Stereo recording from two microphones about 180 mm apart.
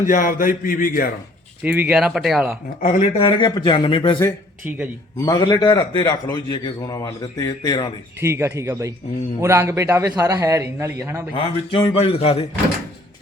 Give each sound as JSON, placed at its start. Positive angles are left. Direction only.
{"t": 0.0, "sound": "speech", "side_deg": 50}
{"t": 1.6, "sound": "speech", "side_deg": -10}
{"t": 2.8, "sound": "a man's voice", "side_deg": 30}
{"t": 5.2, "sound": "a man's voice", "side_deg": 25}
{"t": 8.2, "sound": "a man's voice", "side_deg": -15}
{"t": 11.3, "sound": "speech", "side_deg": 30}